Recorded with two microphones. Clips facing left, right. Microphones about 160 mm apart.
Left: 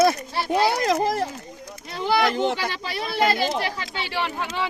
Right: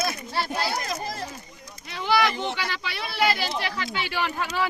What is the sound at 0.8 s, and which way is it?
Speech, 90° left.